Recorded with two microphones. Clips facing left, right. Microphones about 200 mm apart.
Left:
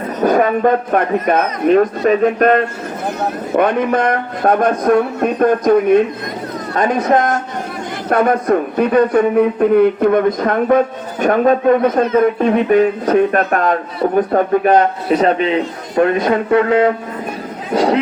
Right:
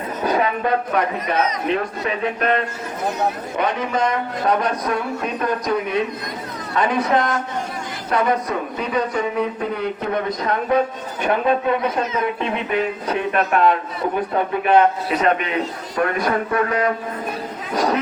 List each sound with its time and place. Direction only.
0.2 s a man's voice: 50° left (ahead or behind); by 18.0 s 30° left (ahead or behind)